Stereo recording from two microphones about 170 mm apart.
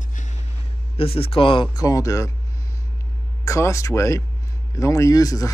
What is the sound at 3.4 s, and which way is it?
Speech, 20° left (ahead or behind).